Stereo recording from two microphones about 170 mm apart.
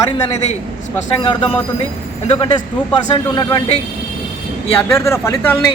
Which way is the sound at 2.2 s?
35° left (ahead or behind).